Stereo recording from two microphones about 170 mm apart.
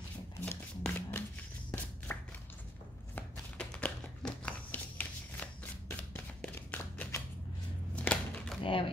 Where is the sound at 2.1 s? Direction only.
10° left (ahead or behind).